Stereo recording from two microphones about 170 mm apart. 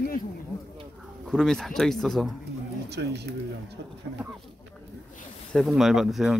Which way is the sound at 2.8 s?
80° right.